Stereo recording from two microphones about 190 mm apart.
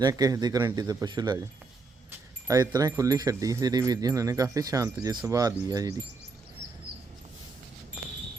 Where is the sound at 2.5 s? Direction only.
20° right (ahead or behind).